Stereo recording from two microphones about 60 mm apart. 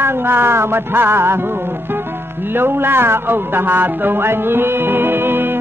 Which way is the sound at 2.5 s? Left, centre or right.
Right.